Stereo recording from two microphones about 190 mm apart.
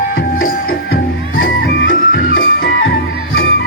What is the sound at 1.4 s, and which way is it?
Music, 65° left (ahead or behind).